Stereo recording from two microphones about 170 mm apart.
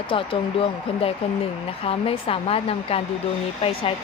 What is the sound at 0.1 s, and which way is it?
Speech, 30° left (ahead or behind).